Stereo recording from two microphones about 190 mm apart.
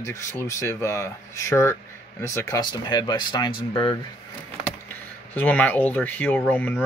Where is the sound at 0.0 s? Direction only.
15° left (ahead or behind).